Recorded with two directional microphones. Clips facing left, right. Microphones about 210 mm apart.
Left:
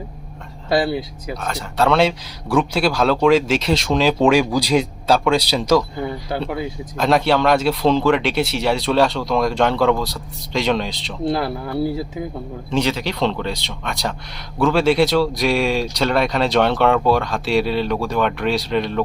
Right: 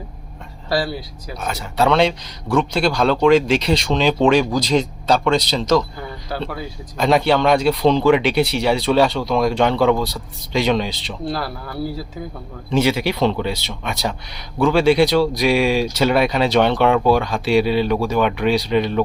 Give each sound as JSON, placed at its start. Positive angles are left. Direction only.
{"t": 0.7, "sound": "speech", "side_deg": 20}
{"t": 1.4, "sound": "speech", "side_deg": -5}
{"t": 6.0, "sound": "a sound", "side_deg": 20}
{"t": 6.9, "sound": "speech", "side_deg": 0}
{"t": 11.3, "sound": "speech", "side_deg": 20}
{"t": 12.7, "sound": "speech", "side_deg": -10}